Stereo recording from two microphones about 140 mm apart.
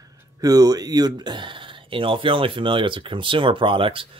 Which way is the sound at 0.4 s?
25° right (ahead or behind).